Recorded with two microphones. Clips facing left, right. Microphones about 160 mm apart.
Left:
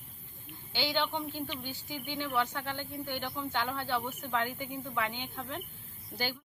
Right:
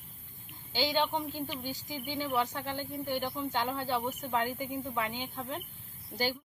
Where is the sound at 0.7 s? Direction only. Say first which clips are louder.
Right 2 dB; 40° right (ahead or behind).